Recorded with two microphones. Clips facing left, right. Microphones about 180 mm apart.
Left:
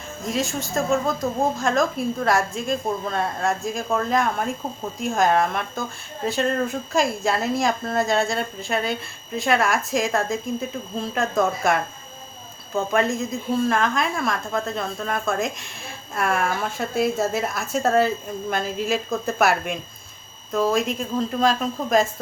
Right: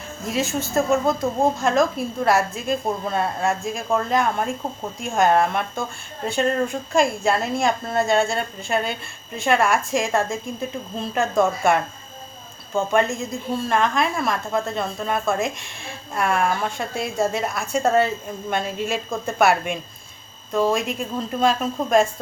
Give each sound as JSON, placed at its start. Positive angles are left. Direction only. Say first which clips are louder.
{"t": 0.3, "sound": "a woman's voice", "louder": "right 2 dB", "side_deg": 0}